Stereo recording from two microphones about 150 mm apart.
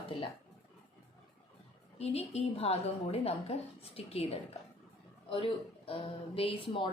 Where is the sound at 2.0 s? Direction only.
45° left (ahead or behind).